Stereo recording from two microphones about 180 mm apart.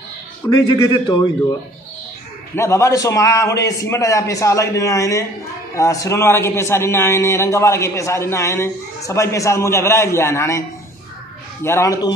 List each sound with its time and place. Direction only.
0.8 s a man's voice: 25° left (ahead or behind)
2.5 s a man's voice: 15° left (ahead or behind)
11.6 s a man's voice: 15° left (ahead or behind)